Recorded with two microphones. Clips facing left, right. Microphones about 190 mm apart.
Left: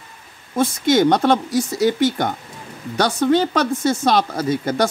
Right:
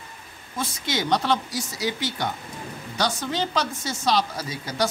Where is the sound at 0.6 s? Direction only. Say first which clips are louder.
Left 12 dB; 50° left (ahead or behind).